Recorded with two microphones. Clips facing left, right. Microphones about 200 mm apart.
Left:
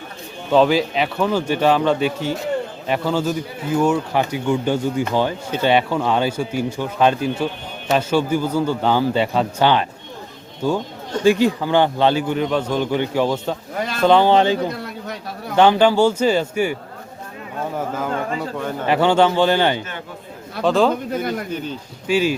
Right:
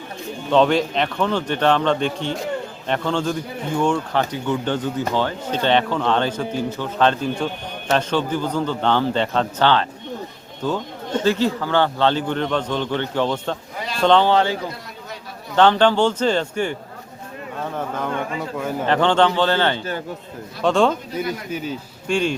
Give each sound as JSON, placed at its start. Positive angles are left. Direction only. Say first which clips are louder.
{"t": 0.5, "sound": "a man's voice", "louder": "left 1 dB", "side_deg": 5}
{"t": 13.7, "sound": "a sound", "louder": "left 5 dB", "side_deg": 50}
{"t": 14.0, "sound": "a man's voice", "louder": "left 2 dB", "side_deg": 10}
{"t": 17.7, "sound": "a man's voice", "louder": "left 1 dB", "side_deg": 5}
{"t": 20.6, "sound": "speech", "louder": "left 1 dB", "side_deg": 0}
{"t": 21.1, "sound": "a man's voice", "louder": "left 3 dB", "side_deg": 50}
{"t": 21.5, "sound": "a man's voice", "louder": "even", "side_deg": -5}
{"t": 22.0, "sound": "speech", "louder": "left 3 dB", "side_deg": 5}